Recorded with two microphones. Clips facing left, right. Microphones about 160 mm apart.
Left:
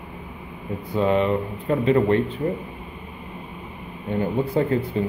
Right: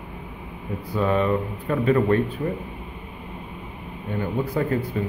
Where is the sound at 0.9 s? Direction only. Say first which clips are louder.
Left 1 dB; 20° left (ahead or behind).